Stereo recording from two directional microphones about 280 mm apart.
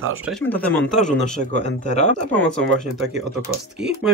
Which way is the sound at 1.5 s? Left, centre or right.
Left.